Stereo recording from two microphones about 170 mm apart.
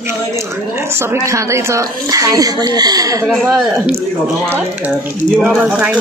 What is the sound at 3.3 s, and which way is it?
Speech, centre (ahead or behind).